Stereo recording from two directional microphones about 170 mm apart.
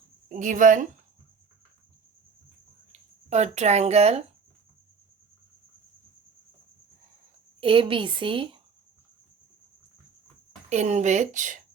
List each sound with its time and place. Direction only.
0.3 s speech: 50° right (ahead or behind)
2.9 s speech: 40° right (ahead or behind)
7.6 s a woman's voice: 30° right (ahead or behind)
10.7 s speech: 40° right (ahead or behind)